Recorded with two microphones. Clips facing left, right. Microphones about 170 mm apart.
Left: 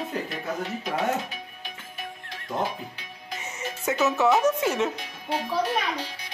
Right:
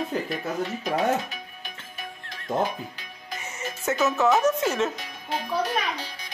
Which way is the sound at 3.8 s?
15° left (ahead or behind).